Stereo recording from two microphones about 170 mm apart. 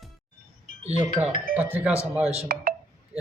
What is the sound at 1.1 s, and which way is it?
Speech, 10° right (ahead or behind).